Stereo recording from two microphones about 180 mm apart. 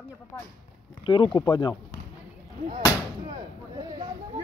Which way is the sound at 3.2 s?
20° right (ahead or behind).